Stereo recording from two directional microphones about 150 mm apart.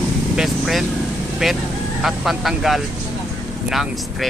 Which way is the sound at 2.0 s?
Centre (ahead or behind).